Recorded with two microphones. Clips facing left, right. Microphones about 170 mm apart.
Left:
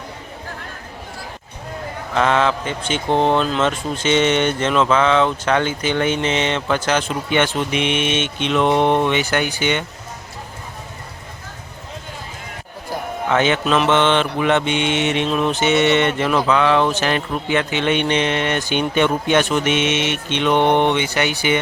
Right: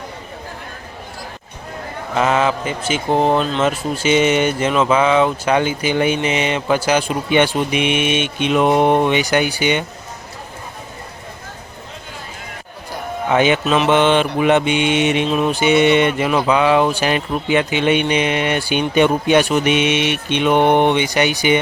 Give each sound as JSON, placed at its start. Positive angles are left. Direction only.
{"t": 2.1, "sound": "speech", "side_deg": -5}
{"t": 13.2, "sound": "speech", "side_deg": -15}